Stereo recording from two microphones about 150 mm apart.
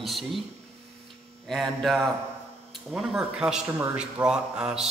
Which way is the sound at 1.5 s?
Centre (ahead or behind).